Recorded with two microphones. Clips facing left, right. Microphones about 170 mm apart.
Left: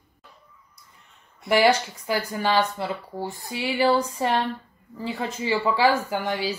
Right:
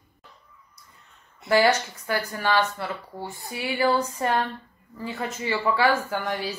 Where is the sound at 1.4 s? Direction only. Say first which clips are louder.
Left 1 dB; 15° left (ahead or behind).